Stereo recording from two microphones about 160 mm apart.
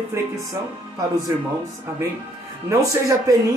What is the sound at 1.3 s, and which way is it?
Speech, 20° right (ahead or behind).